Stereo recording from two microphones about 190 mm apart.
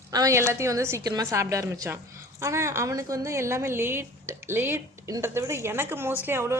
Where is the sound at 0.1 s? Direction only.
15° right (ahead or behind).